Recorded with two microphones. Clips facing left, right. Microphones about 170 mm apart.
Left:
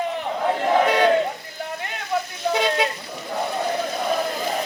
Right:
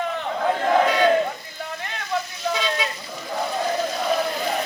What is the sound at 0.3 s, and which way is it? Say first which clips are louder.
Chatter: even; 10° left (ahead or behind).